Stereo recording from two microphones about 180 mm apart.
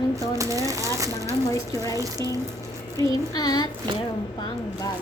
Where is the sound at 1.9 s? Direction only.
20° right (ahead or behind).